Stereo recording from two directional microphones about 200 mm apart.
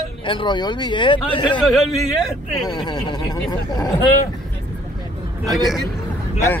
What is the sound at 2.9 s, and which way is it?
Speech, 20° left (ahead or behind).